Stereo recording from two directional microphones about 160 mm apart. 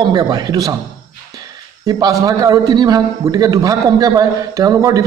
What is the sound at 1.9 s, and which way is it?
A man's voice, 25° right (ahead or behind).